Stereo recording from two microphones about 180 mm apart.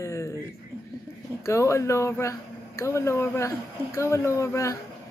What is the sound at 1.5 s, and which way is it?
Speech, 15° left (ahead or behind).